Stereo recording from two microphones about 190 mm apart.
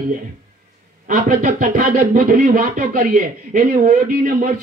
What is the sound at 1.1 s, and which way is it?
Speech, 40° right (ahead or behind).